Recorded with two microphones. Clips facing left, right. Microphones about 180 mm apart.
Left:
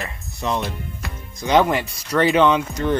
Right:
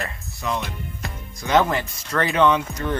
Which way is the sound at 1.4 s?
15° left (ahead or behind).